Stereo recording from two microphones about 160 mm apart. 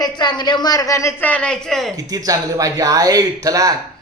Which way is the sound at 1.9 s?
20° right (ahead or behind).